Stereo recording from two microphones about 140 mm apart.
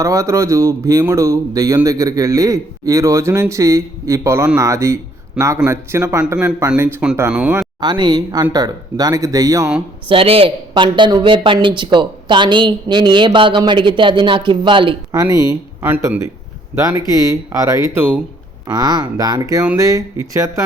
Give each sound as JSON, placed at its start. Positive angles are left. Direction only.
{"t": 0.0, "sound": "speech", "side_deg": -20}
{"t": 6.3, "sound": "speech", "side_deg": -5}
{"t": 7.8, "sound": "a woman's voice", "side_deg": -30}
{"t": 10.1, "sound": "a woman's voice", "side_deg": -40}
{"t": 17.9, "sound": "speech", "side_deg": -15}
{"t": 18.7, "sound": "speech", "side_deg": -30}